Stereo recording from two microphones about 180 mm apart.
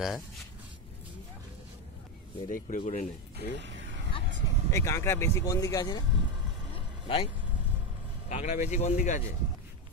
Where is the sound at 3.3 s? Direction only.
80° right.